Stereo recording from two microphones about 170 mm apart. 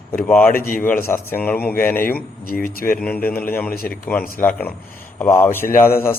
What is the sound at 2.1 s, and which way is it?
Speech, 60° left (ahead or behind).